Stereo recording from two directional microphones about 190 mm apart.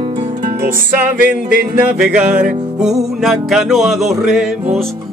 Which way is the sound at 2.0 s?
5° right (ahead or behind).